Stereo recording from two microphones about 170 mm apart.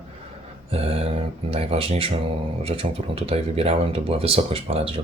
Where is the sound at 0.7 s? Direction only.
35° right (ahead or behind).